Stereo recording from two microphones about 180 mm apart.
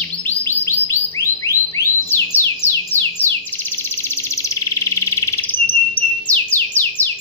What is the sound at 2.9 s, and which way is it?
Bird, 10° left (ahead or behind).